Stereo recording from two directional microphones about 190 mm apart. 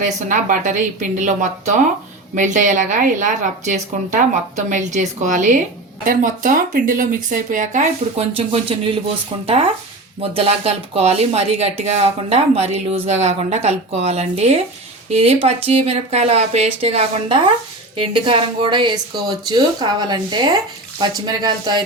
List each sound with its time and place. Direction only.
0.0 s speech: 40° right (ahead or behind)
10.2 s speech: 30° right (ahead or behind)